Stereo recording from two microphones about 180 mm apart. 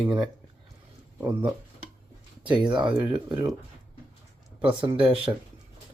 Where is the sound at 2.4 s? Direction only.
25° right (ahead or behind).